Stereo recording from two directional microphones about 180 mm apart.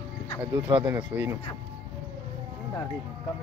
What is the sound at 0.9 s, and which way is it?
Speech, 10° right (ahead or behind).